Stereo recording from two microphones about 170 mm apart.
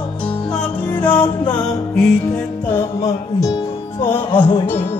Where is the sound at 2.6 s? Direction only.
15° left (ahead or behind).